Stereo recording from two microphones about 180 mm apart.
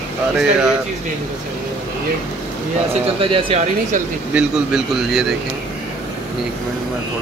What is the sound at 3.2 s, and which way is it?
Speech, 30° right (ahead or behind).